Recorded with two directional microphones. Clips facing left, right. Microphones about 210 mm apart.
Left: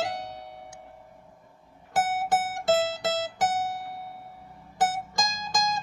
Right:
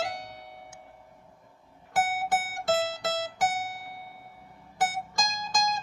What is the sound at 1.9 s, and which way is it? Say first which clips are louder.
Music: left 2 dB; 25° left (ahead or behind).